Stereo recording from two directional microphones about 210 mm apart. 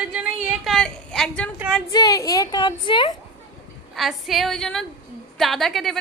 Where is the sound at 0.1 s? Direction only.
5° right (ahead or behind).